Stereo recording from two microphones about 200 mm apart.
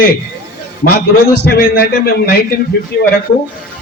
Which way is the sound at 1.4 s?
50° left (ahead or behind).